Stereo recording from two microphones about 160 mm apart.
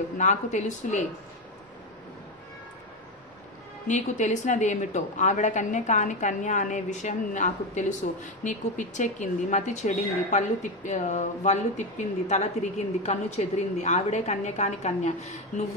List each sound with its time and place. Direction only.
0.2 s a woman's voice: 50° left (ahead or behind)
3.8 s a woman's voice: 50° left (ahead or behind)